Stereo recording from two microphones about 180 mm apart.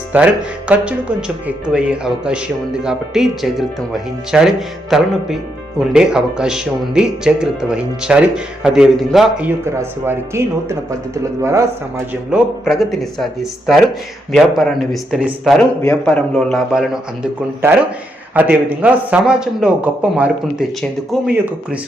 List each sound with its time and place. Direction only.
0.1 s a man's voice: 10° right (ahead or behind)
9.6 s a man's voice: 15° right (ahead or behind)
12.3 s speech: centre (ahead or behind)
15.8 s speech: 10° left (ahead or behind)
18.3 s a man's voice: 10° right (ahead or behind)